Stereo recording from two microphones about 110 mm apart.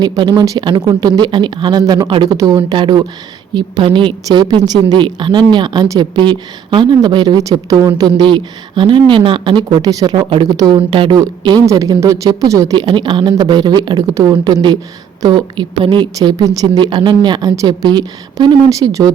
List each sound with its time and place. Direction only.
0.0 s speech: 45° right (ahead or behind)
2.3 s speech: 35° right (ahead or behind)
2.7 s speech: 45° right (ahead or behind)
4.3 s speech: 35° right (ahead or behind)
8.2 s speech: 50° right (ahead or behind)
10.2 s speech: 50° right (ahead or behind)
11.1 s speech: 40° right (ahead or behind)
12.7 s speech: 45° right (ahead or behind); by 14.3 s 30° right (ahead or behind)
14.4 s speech: 40° right (ahead or behind)
16.1 s speech: 35° right (ahead or behind)